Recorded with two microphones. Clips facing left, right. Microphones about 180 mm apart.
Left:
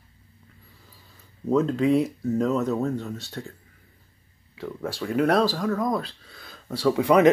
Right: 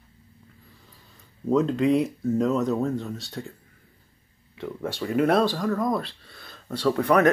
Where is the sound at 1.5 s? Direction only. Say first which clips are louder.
Even; centre (ahead or behind).